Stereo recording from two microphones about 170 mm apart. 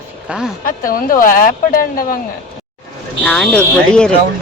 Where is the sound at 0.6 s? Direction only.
55° left (ahead or behind).